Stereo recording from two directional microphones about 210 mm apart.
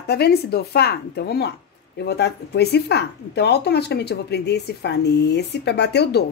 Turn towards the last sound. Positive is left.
turn(degrees=50)  # may be behind; listen again after turning